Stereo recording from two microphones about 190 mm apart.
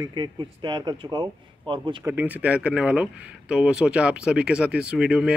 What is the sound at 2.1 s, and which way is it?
Speech, 10° right (ahead or behind).